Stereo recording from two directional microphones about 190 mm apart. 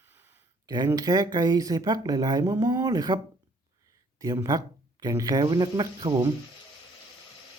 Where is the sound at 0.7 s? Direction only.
20° right (ahead or behind).